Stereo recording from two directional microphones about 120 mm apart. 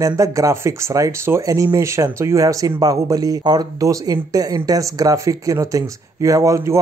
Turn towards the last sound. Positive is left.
turn(degrees=-25)  # may be behind; listen again after turning